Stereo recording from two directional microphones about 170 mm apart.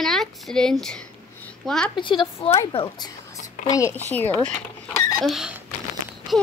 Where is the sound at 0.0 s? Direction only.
Centre (ahead or behind).